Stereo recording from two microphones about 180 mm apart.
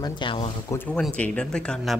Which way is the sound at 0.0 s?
25° left (ahead or behind).